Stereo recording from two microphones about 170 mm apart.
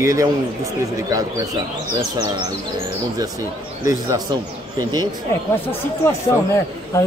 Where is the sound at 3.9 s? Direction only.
20° right (ahead or behind).